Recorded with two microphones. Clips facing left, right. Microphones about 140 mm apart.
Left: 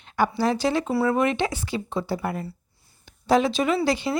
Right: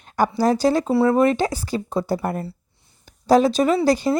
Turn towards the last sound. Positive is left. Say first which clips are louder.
# right 5 dB
turn(degrees=-40)  # may be behind; listen again after turning